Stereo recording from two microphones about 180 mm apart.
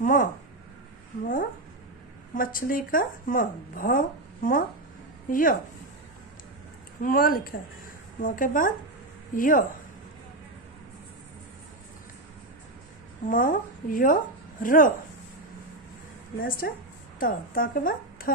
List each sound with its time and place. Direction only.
0.0 s speech: 50° left (ahead or behind)
2.3 s speech: 50° left (ahead or behind)
7.0 s speech: 50° left (ahead or behind)
13.3 s a woman's voice: 50° left (ahead or behind)
16.4 s a woman's voice: 55° left (ahead or behind)